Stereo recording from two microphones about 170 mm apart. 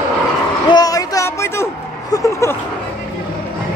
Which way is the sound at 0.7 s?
20° left (ahead or behind).